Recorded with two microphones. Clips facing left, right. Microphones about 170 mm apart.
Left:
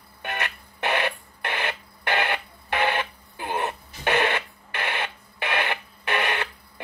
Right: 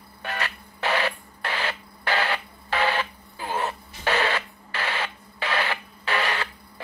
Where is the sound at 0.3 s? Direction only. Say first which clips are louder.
Even; 20° left (ahead or behind).